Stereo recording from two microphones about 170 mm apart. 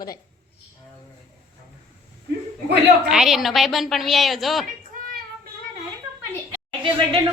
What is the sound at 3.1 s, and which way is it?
Speech, centre (ahead or behind).